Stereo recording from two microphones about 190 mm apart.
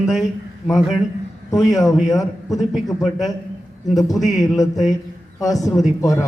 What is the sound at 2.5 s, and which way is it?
Speech, centre (ahead or behind).